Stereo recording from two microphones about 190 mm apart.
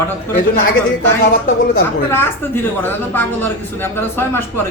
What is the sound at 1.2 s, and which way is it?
Speech, 50° left (ahead or behind).